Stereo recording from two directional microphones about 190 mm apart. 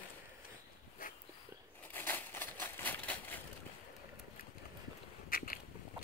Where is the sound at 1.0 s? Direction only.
45° left (ahead or behind).